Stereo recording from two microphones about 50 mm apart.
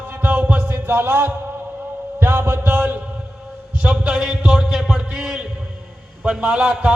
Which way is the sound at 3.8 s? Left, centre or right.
Centre.